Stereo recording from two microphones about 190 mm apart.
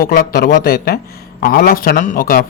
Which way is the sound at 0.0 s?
50° left (ahead or behind).